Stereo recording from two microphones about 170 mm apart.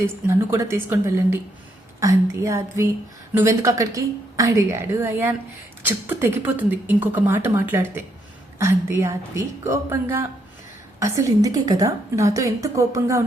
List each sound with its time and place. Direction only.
0.0 s a woman's voice: 15° right (ahead or behind)